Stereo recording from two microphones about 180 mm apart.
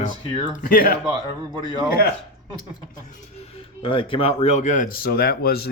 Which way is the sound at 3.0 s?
40° left (ahead or behind).